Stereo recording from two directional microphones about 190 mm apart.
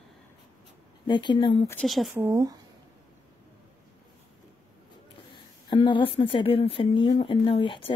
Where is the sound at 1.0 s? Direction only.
25° left (ahead or behind).